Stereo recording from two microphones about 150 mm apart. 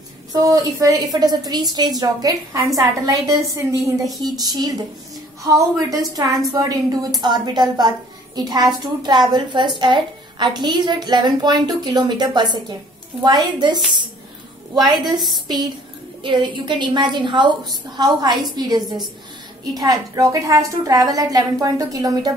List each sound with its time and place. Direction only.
0.3 s a woman's voice: 25° right (ahead or behind)
14.7 s a woman's voice: 30° right (ahead or behind)